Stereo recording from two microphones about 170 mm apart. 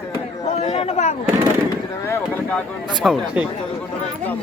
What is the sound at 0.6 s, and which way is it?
Speech, 40° left (ahead or behind).